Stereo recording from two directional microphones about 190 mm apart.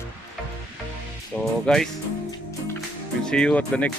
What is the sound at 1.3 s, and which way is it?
Speech, 10° left (ahead or behind).